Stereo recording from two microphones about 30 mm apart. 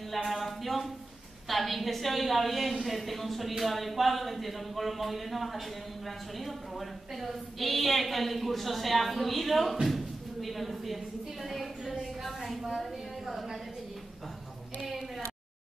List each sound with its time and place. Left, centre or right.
0.1 s a sound: centre
1.5 s a woman's voice: centre
14.8 s speech: centre